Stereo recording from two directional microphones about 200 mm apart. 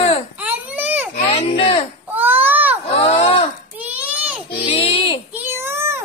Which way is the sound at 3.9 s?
5° right (ahead or behind).